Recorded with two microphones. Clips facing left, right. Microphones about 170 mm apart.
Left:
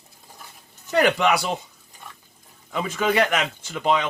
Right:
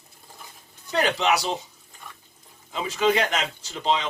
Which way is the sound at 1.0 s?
55° left (ahead or behind).